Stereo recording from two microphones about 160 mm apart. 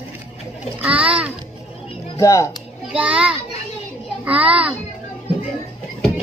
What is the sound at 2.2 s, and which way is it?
Speech, 20° left (ahead or behind).